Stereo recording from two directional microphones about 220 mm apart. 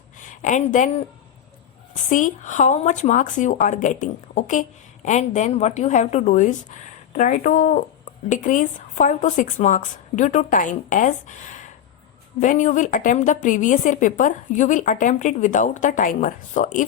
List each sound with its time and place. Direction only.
0.2 s a woman's voice: 35° left (ahead or behind)
2.0 s a woman's voice: 35° left (ahead or behind)